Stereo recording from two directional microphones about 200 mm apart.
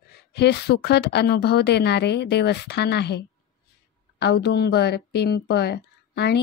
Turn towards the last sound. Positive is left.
turn(degrees=55)  # may be behind; listen again after turning